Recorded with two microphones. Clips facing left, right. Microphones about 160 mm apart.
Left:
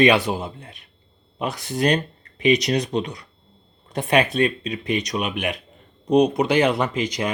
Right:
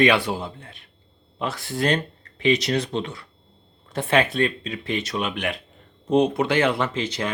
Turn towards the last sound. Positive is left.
turn(degrees=15)  # may be behind; listen again after turning